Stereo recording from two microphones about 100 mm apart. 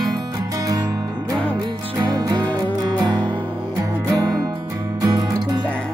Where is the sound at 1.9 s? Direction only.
35° right (ahead or behind).